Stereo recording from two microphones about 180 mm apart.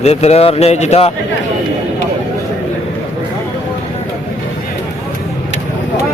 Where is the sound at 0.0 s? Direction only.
35° left (ahead or behind).